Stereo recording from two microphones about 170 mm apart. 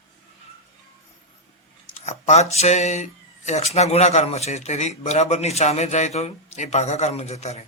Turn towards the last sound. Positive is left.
turn(degrees=40)  # may be behind; listen again after turning